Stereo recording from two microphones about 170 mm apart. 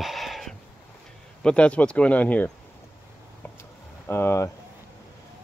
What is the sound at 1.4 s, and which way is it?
Speech, 5° left (ahead or behind).